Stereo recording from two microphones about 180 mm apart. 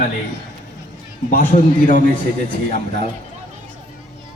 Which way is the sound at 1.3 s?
45° left (ahead or behind).